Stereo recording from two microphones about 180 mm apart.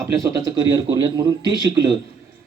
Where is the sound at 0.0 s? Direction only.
15° right (ahead or behind).